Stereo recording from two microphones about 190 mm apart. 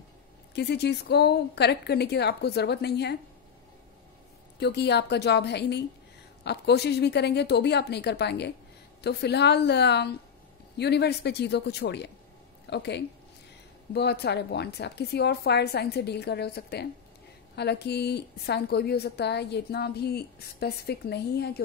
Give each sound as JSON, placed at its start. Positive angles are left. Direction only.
{"t": 0.6, "sound": "a woman's voice", "side_deg": 60}
{"t": 4.6, "sound": "a woman's voice", "side_deg": 60}